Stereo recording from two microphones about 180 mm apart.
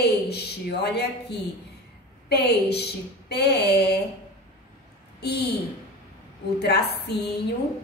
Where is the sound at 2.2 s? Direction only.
65° left (ahead or behind).